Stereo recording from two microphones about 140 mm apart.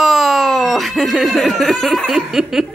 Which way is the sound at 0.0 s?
Centre (ahead or behind).